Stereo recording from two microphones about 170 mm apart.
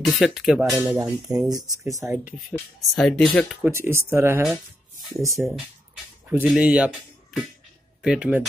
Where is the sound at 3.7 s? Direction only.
15° right (ahead or behind).